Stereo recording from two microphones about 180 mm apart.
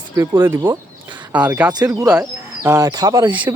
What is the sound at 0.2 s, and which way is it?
Speech, 15° right (ahead or behind).